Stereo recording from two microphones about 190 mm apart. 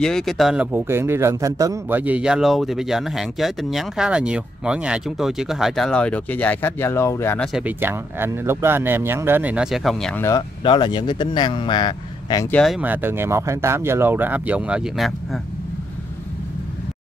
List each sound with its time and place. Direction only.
0.0 s speech: centre (ahead or behind)
7.5 s speech: 10° right (ahead or behind)
10.2 s speech: 20° left (ahead or behind)
12.4 s speech: 5° left (ahead or behind)